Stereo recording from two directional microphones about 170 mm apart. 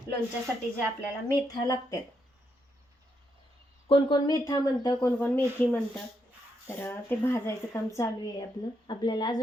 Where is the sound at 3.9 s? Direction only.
25° left (ahead or behind).